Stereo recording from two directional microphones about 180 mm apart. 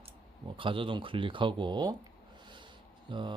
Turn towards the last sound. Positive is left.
turn(degrees=-25)  # may be behind; listen again after turning